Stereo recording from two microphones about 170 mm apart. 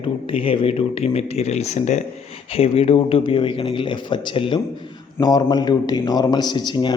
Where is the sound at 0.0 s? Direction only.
30° left (ahead or behind).